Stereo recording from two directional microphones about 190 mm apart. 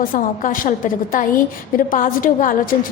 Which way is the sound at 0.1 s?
45° left (ahead or behind).